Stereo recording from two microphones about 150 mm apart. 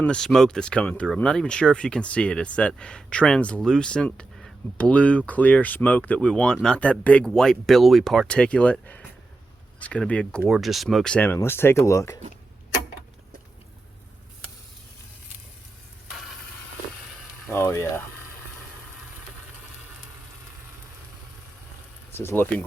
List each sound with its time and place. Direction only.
0.0 s speech: 5° left (ahead or behind); by 12.2 s 20° left (ahead or behind)
17.5 s speech: 15° left (ahead or behind)
22.2 s speech: 15° left (ahead or behind)